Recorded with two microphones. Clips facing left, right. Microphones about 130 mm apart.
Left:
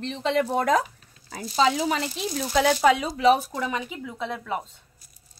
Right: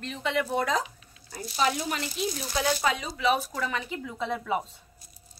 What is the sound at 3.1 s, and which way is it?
Speech, 35° left (ahead or behind).